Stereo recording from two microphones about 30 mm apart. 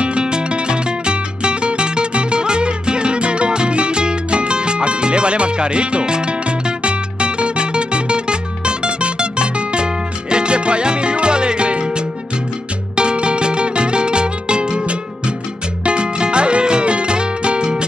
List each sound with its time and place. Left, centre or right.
0.0 s music: right
12.9 s music: right